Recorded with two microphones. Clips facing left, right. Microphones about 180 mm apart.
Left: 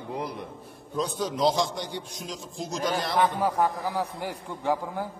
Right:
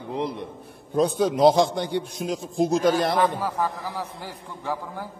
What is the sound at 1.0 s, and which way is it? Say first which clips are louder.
A man's voice: right 7 dB; 60° right (ahead or behind).